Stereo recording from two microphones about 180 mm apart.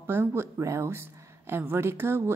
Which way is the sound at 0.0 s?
15° right (ahead or behind).